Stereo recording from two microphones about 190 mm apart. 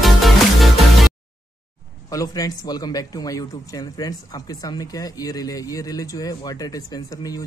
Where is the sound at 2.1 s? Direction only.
20° left (ahead or behind).